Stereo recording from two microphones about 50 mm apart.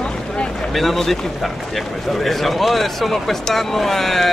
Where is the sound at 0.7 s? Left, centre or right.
Centre.